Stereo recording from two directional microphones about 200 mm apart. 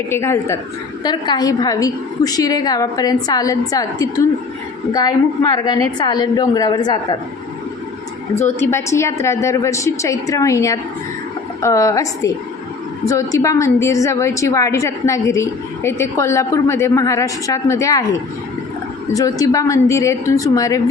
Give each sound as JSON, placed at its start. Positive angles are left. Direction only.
{"t": 0.1, "sound": "a woman's voice", "side_deg": 15}
{"t": 8.4, "sound": "a woman's voice", "side_deg": 15}
{"t": 19.1, "sound": "a woman's voice", "side_deg": 15}